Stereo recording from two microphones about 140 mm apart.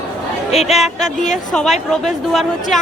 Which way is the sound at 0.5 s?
50° left (ahead or behind).